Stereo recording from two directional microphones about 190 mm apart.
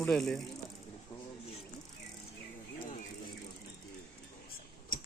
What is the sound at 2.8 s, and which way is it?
Bird, 45° left (ahead or behind).